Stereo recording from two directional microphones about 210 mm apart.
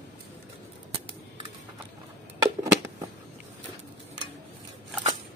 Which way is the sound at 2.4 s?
15° right (ahead or behind).